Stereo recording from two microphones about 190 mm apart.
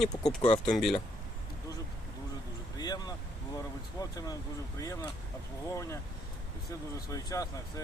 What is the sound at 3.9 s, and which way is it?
Speech, 20° left (ahead or behind).